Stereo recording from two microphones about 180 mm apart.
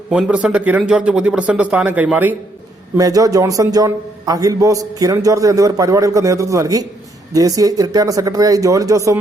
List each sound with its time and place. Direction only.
0.1 s speech: 5° right (ahead or behind)
3.0 s a man's voice: 20° right (ahead or behind)